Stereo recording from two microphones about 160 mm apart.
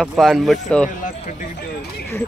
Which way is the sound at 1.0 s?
55° left (ahead or behind).